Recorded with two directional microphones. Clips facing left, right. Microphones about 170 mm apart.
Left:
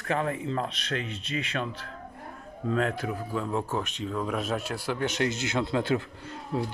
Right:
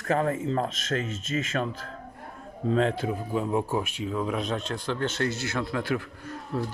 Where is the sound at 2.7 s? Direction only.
30° right (ahead or behind); by 6.6 s 20° left (ahead or behind).